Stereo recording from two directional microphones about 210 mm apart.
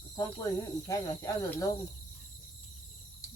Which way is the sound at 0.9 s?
15° left (ahead or behind).